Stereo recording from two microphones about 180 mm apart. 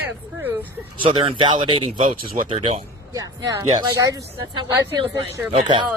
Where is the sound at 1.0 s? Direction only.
30° right (ahead or behind).